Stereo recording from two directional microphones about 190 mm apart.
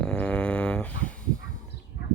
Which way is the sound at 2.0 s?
60° left (ahead or behind).